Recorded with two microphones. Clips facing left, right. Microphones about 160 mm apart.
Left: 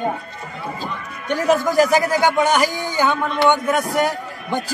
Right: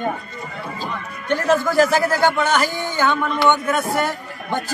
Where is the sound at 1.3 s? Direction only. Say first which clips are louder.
Left 1 dB; 15° left (ahead or behind).